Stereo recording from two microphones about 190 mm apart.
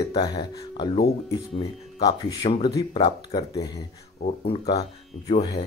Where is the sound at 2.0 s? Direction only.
20° left (ahead or behind).